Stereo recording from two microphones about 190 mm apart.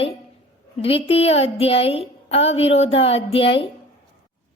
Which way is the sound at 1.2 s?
30° left (ahead or behind).